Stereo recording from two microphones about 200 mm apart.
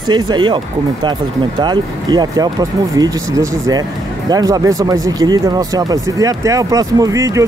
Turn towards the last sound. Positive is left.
turn(degrees=-15)  # may be behind; listen again after turning